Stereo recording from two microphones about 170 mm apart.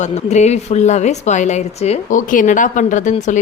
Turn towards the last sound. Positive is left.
turn(degrees=45)  # may be behind; listen again after turning